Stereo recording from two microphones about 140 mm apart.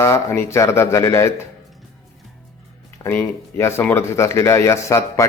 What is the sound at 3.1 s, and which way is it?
Speech, 15° left (ahead or behind).